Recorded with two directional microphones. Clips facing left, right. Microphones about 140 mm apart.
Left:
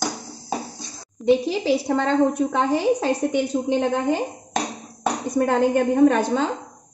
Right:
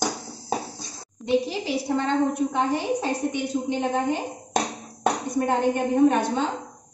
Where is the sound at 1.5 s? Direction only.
90° left.